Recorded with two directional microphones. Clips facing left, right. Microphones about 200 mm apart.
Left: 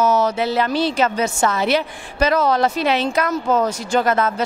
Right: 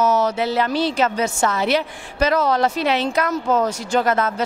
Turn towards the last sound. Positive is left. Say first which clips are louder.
# left 1 dB
turn(degrees=20)  # may be behind; listen again after turning